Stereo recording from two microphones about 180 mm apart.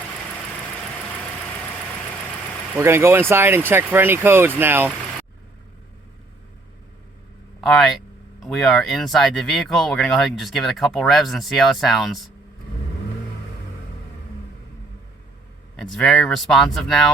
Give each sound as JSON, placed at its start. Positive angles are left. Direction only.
{"t": 2.7, "sound": "speech", "side_deg": -15}
{"t": 7.6, "sound": "speech", "side_deg": 0}
{"t": 15.7, "sound": "speech", "side_deg": 5}